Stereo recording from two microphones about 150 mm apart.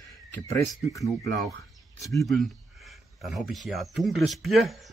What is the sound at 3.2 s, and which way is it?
Speech, centre (ahead or behind).